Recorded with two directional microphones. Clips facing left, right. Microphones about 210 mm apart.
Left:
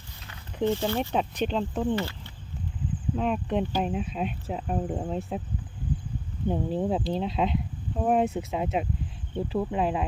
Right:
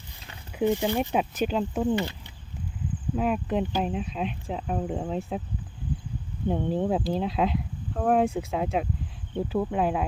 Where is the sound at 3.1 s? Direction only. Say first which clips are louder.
Right 1 dB; 5° right (ahead or behind).